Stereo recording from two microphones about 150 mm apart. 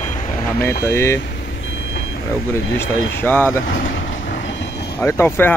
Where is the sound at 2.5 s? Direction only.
15° left (ahead or behind).